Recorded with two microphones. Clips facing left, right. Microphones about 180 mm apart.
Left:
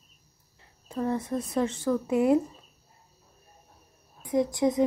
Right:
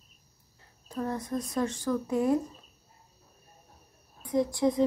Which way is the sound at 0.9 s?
25° left (ahead or behind).